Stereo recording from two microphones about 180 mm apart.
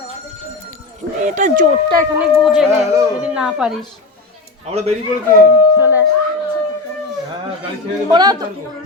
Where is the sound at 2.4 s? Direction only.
Centre (ahead or behind).